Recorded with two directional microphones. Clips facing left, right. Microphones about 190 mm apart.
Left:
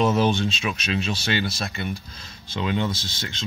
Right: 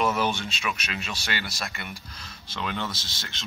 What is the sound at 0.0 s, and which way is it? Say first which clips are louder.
Speech: left 5 dB; 25° left (ahead or behind).